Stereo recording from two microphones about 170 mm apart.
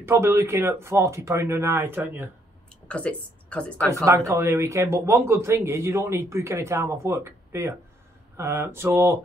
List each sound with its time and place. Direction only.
0.0 s speech: 15° right (ahead or behind)
2.9 s speech: 5° left (ahead or behind)
3.7 s speech: 15° right (ahead or behind)